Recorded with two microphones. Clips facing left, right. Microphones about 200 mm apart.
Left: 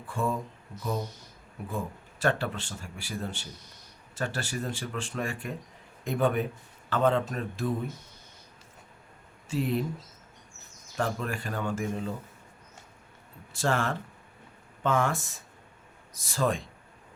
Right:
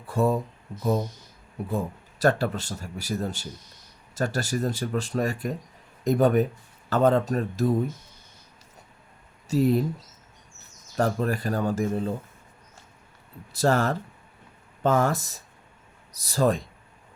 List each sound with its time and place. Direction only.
0.1 s speech: 40° right (ahead or behind)
1.7 s speech: 40° right (ahead or behind)
9.5 s speech: 40° right (ahead or behind)
10.9 s speech: 40° right (ahead or behind)
13.5 s speech: 40° right (ahead or behind)